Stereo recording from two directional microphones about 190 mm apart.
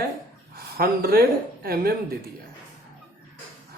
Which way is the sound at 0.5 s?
55° right (ahead or behind).